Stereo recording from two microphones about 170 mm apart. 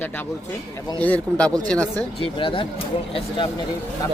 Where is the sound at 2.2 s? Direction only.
30° left (ahead or behind).